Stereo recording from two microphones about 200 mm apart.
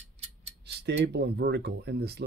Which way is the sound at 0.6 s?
55° right (ahead or behind).